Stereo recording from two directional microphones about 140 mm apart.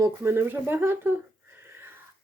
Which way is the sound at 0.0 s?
20° right (ahead or behind).